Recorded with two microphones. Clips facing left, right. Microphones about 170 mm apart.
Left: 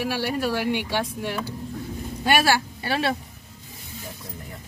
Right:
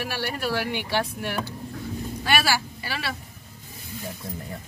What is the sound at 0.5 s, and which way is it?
Speech, 15° left (ahead or behind).